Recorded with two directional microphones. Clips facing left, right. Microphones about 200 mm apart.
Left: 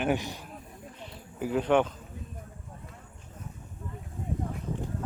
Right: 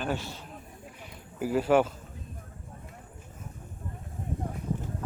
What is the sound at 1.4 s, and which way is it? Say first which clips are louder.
Speech: right 1 dB; 5° right (ahead or behind).